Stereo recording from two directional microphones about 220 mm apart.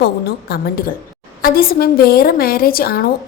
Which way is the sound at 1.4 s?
40° left (ahead or behind).